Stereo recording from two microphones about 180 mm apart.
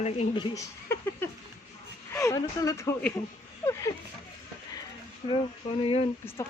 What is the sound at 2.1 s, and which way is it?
Speech, 15° left (ahead or behind).